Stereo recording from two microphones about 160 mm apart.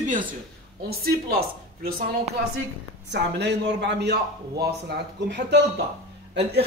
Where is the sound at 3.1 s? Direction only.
90° right.